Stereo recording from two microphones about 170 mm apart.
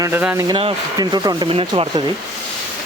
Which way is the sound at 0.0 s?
10° right (ahead or behind).